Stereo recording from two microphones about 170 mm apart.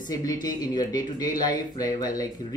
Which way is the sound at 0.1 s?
20° left (ahead or behind).